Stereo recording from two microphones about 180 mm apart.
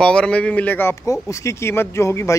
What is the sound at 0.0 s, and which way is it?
Speech, 5° left (ahead or behind).